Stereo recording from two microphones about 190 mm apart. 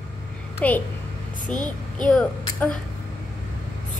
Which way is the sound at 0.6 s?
5° left (ahead or behind).